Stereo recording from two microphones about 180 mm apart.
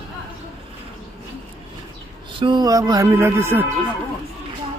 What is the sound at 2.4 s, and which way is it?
Speech, 20° right (ahead or behind).